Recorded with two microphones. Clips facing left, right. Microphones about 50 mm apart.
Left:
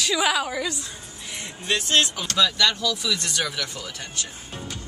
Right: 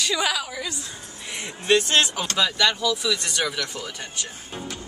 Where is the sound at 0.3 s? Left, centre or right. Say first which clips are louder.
Left 4 dB; left.